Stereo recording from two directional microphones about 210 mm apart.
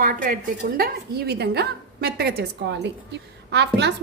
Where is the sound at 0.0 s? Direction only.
40° right (ahead or behind).